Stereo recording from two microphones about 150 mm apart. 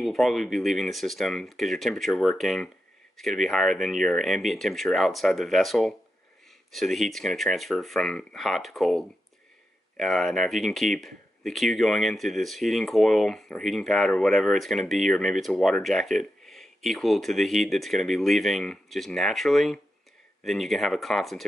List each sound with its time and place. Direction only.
0.0 s speech: centre (ahead or behind)